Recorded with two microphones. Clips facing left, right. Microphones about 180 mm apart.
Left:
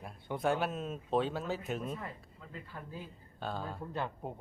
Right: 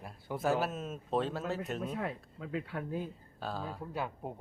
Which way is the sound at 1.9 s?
85° right.